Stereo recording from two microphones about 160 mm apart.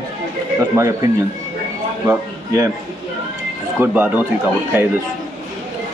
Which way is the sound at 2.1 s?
20° right (ahead or behind).